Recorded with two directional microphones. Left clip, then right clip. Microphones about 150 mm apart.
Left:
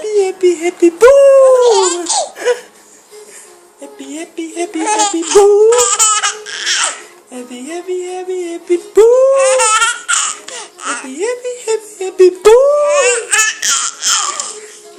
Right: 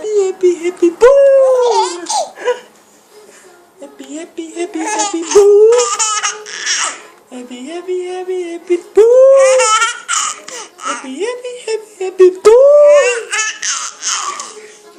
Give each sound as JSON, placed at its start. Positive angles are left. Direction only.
{"t": 0.0, "sound": "a sound", "side_deg": 25}
{"t": 1.5, "sound": "laughter", "side_deg": 15}
{"t": 2.4, "sound": "laughter", "side_deg": 40}
{"t": 3.9, "sound": "baby cry", "side_deg": 10}
{"t": 7.3, "sound": "a sound", "side_deg": 5}
{"t": 12.5, "sound": "laughter", "side_deg": 25}